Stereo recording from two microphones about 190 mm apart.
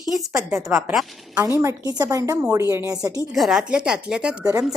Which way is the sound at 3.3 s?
Centre (ahead or behind).